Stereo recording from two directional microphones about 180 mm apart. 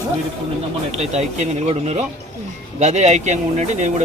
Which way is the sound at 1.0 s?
35° right (ahead or behind).